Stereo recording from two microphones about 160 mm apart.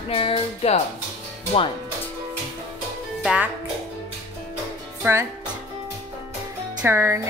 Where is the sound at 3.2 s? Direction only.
5° right (ahead or behind).